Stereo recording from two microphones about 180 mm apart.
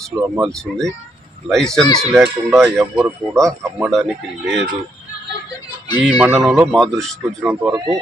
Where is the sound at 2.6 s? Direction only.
10° right (ahead or behind).